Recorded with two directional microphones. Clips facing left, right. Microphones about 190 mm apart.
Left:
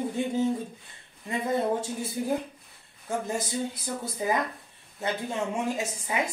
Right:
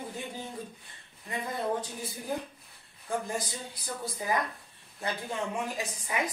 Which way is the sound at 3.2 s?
25° left (ahead or behind).